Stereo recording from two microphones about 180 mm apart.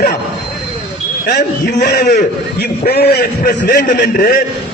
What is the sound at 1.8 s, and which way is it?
A man's voice, 60° left (ahead or behind).